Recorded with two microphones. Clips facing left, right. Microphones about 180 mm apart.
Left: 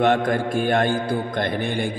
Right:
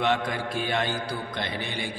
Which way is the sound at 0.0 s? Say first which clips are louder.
Left 7 dB; 50° left (ahead or behind).